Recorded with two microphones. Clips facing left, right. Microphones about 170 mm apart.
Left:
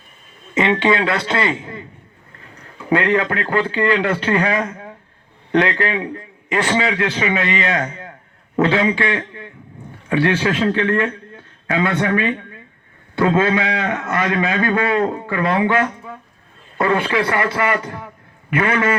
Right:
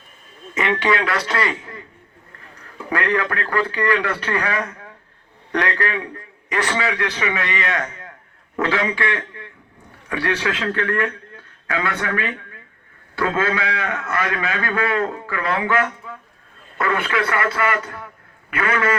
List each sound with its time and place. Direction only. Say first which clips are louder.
0.5 s a man's voice: left 4 dB; 25° left (ahead or behind)